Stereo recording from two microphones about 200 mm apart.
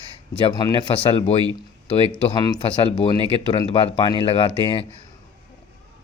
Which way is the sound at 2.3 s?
20° left (ahead or behind).